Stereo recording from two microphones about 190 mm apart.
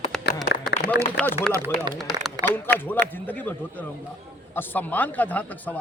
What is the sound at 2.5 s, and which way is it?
Speech, 10° left (ahead or behind).